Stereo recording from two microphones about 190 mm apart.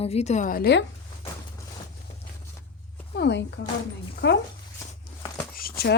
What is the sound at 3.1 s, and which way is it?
Speech, 65° left (ahead or behind).